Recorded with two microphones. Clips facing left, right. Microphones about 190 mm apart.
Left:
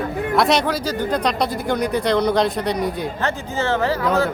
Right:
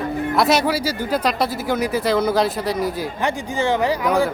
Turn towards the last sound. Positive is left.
turn(degrees=-15)  # may be behind; listen again after turning